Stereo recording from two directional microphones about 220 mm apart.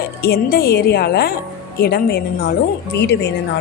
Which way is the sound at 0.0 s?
45° left (ahead or behind).